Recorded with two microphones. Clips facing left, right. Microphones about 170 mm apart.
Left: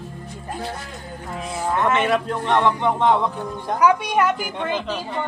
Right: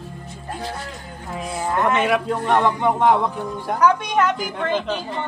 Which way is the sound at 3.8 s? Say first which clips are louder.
Even; 10° left (ahead or behind).